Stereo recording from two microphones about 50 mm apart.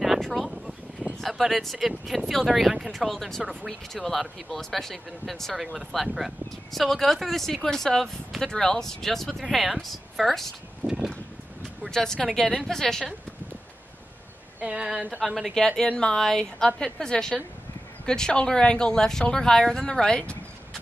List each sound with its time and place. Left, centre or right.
0.2 s a sound: centre
1.2 s speech: centre
11.9 s speech: centre
14.6 s a woman's voice: right
15.1 s speech: centre
15.5 s speech: centre